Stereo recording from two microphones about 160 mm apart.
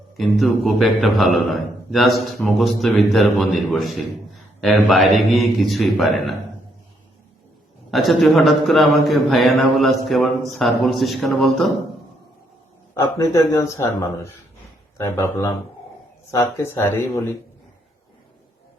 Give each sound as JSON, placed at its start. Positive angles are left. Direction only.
{"t": 0.2, "sound": "a man's voice", "side_deg": 0}
{"t": 7.9, "sound": "a man's voice", "side_deg": 0}
{"t": 12.9, "sound": "a man's voice", "side_deg": 20}